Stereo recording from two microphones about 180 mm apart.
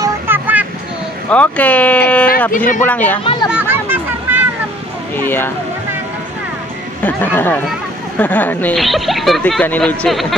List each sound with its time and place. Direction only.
0.0 s vehicle: 10° right (ahead or behind)
1.3 s speech: 5° left (ahead or behind)
2.5 s speech: 50° left (ahead or behind)
2.9 s speech: 10° left (ahead or behind)
3.5 s hubbub: 10° right (ahead or behind)
5.1 s speech: 10° left (ahead or behind)
7.0 s speech: 10° left (ahead or behind)